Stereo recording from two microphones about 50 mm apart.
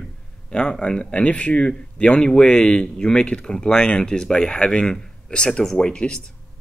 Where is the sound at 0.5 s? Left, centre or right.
Centre.